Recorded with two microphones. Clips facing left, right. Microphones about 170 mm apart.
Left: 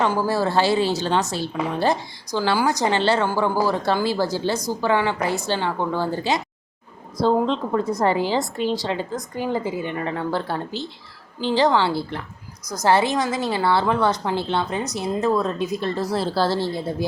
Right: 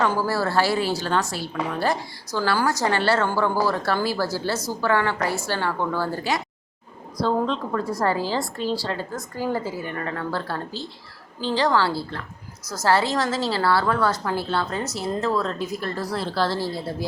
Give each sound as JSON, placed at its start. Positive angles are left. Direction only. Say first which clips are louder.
{"t": 0.0, "sound": "a woman's voice", "louder": "left 2 dB", "side_deg": 15}